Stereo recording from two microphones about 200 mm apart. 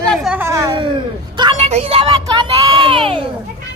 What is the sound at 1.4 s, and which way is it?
Speech, 25° right (ahead or behind).